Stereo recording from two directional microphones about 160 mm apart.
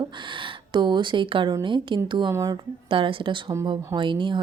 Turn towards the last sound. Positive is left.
turn(degrees=-30)  # may be behind; listen again after turning